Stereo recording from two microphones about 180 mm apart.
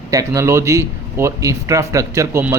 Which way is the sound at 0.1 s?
15° right (ahead or behind).